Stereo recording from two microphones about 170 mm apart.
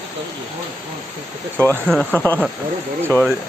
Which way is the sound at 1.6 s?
5° left (ahead or behind).